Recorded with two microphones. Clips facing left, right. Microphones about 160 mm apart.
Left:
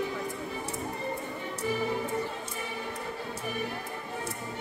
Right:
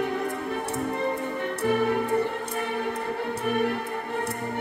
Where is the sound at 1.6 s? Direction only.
60° right (ahead or behind).